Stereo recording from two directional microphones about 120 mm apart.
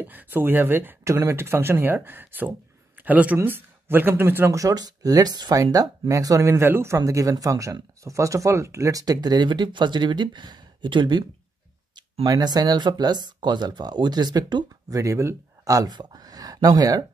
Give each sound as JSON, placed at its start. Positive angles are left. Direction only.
{"t": 0.0, "sound": "speech", "side_deg": -15}